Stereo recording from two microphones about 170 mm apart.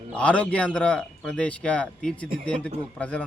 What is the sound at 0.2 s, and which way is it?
A man's voice, 5° left (ahead or behind).